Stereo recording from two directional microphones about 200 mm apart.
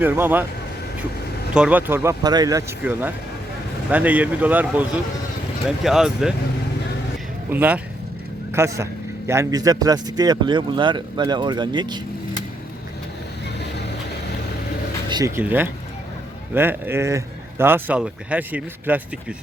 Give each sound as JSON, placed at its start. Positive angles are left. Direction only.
{"t": 0.0, "sound": "speech", "side_deg": -10}
{"t": 1.5, "sound": "speech", "side_deg": -5}
{"t": 7.5, "sound": "a man's voice", "side_deg": -10}
{"t": 15.1, "sound": "speech", "side_deg": -15}